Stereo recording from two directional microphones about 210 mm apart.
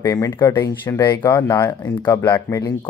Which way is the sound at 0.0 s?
15° left (ahead or behind).